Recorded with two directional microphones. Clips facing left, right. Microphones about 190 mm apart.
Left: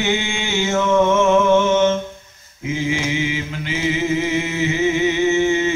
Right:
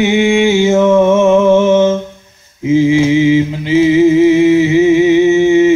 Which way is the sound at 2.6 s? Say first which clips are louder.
Right 13 dB; 25° right (ahead or behind).